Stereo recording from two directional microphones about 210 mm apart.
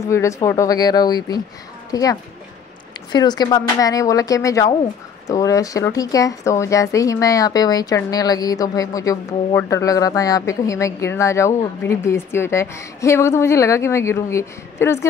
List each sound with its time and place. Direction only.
0.1 s speech: 15° left (ahead or behind)